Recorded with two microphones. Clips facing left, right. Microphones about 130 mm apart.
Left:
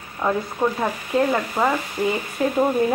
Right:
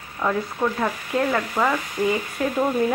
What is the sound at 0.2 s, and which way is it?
Speech, 15° left (ahead or behind).